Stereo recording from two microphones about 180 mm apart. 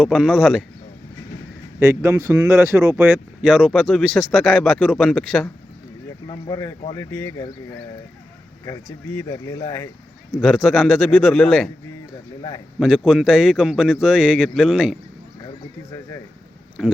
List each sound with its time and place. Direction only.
0.0 s speech: centre (ahead or behind)
1.8 s speech: 15° right (ahead or behind); by 5.5 s 5° left (ahead or behind)
6.2 s speech: 30° left (ahead or behind)
6.9 s speech: 15° left (ahead or behind)
8.6 s speech: 20° left (ahead or behind)
10.4 s speech: centre (ahead or behind)
12.4 s speech: 25° left (ahead or behind)
12.8 s speech: centre (ahead or behind)
16.8 s speech: centre (ahead or behind)